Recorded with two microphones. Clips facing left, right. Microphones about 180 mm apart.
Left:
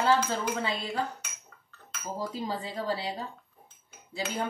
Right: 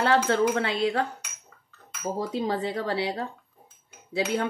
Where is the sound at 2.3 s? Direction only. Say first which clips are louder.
Right 7 dB; 75° right (ahead or behind).